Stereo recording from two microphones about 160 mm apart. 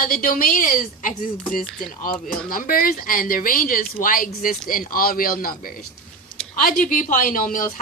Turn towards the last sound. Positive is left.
turn(degrees=55)  # may be behind; listen again after turning